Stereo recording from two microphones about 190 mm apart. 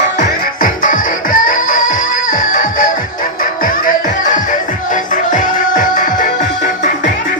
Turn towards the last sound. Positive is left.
turn(degrees=45)  # may be behind; listen again after turning